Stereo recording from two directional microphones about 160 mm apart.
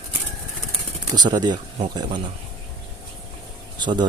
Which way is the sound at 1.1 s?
25° right (ahead or behind).